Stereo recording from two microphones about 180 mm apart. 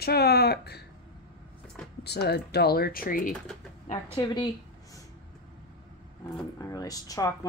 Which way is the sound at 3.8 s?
40° left (ahead or behind).